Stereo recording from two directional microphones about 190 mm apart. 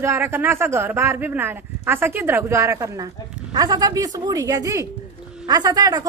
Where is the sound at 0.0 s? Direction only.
15° right (ahead or behind).